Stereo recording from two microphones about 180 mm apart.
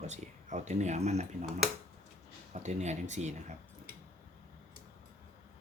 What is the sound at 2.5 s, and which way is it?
Speech, 40° right (ahead or behind).